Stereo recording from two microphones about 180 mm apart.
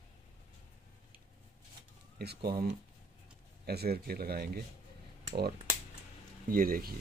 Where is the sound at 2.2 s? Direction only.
65° right (ahead or behind).